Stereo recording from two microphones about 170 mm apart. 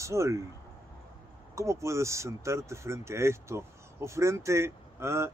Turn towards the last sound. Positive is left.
turn(degrees=-15)  # may be behind; listen again after turning